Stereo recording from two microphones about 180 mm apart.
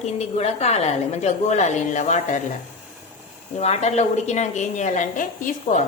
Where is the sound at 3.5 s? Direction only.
40° left (ahead or behind).